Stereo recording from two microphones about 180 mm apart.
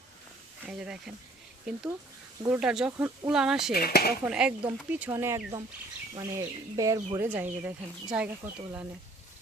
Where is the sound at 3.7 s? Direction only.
60° left (ahead or behind).